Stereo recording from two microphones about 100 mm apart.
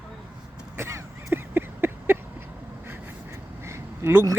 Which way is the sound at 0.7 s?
30° right (ahead or behind).